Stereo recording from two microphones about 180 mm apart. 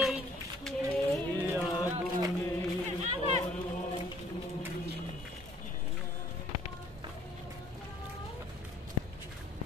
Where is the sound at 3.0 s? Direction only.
40° right (ahead or behind).